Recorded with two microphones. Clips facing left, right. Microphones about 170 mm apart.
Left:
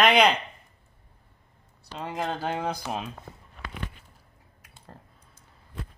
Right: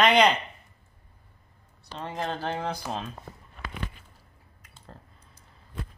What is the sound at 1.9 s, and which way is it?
Speech, 10° left (ahead or behind).